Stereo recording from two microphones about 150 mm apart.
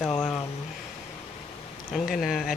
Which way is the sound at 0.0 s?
5° left (ahead or behind).